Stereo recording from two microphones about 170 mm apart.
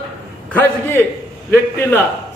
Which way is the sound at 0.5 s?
10° left (ahead or behind).